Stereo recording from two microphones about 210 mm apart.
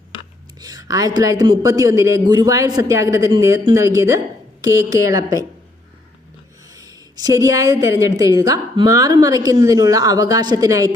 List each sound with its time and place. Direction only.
0.6 s a woman's voice: 20° right (ahead or behind)
6.7 s a woman's voice: 15° right (ahead or behind)